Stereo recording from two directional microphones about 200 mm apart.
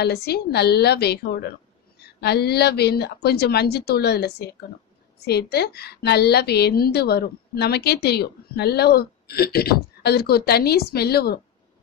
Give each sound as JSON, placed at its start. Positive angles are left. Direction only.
{"t": 0.0, "sound": "a woman's voice", "side_deg": 55}